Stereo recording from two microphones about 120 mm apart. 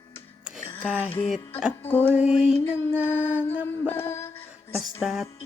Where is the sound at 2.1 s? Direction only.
5° right (ahead or behind).